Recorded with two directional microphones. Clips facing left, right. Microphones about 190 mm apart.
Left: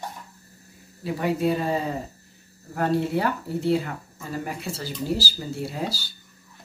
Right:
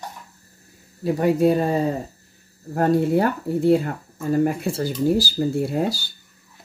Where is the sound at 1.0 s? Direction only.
45° right (ahead or behind).